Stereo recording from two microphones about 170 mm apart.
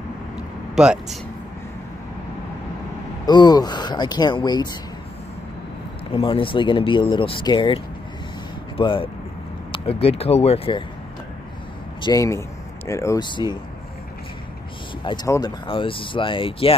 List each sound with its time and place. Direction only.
0.8 s speech: 5° right (ahead or behind)
3.3 s speech: 25° left (ahead or behind)
6.1 s speech: 30° left (ahead or behind)
12.0 s speech: 20° left (ahead or behind)
15.2 s speech: 15° left (ahead or behind)
15.6 s speech: 30° left (ahead or behind)